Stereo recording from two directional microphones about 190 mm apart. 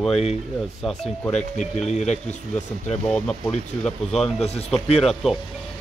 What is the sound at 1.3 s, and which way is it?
Speech, 40° left (ahead or behind).